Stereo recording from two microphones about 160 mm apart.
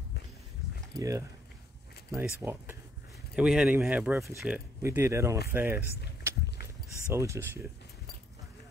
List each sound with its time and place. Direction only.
0.9 s speech: 20° right (ahead or behind)
2.2 s speech: 10° right (ahead or behind)
6.2 s a sound: 15° right (ahead or behind)
7.1 s speech: 15° right (ahead or behind)